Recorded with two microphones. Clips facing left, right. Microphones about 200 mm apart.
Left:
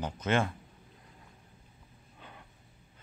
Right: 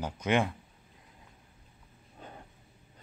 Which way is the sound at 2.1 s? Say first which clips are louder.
Right 5 dB; 40° right (ahead or behind).